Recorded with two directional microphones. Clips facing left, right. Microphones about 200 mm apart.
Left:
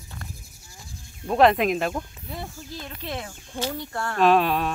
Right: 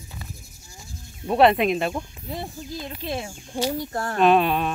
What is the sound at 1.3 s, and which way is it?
Speech, 5° right (ahead or behind).